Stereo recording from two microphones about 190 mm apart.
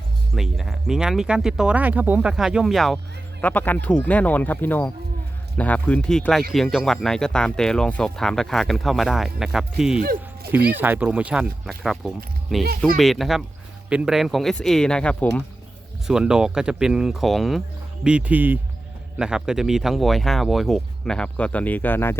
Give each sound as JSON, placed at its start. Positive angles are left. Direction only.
{"t": 0.3, "sound": "speech", "side_deg": 0}
{"t": 10.0, "sound": "music", "side_deg": -50}
{"t": 10.7, "sound": "speech", "side_deg": -10}
{"t": 16.0, "sound": "speech", "side_deg": -5}